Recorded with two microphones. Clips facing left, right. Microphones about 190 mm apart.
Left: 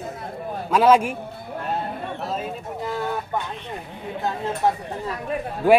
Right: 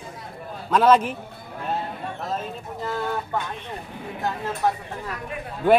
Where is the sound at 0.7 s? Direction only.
10° left (ahead or behind).